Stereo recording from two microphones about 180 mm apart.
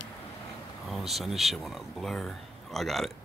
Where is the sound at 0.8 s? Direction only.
Centre (ahead or behind).